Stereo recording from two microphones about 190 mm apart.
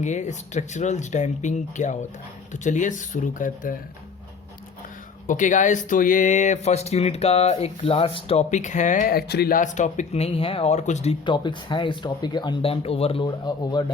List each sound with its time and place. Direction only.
0.0 s speech: 40° left (ahead or behind)
5.2 s speech: 40° left (ahead or behind); by 13.8 s 20° left (ahead or behind)